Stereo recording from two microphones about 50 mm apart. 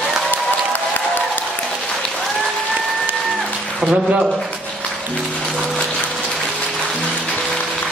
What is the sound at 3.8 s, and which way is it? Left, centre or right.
Speech, right.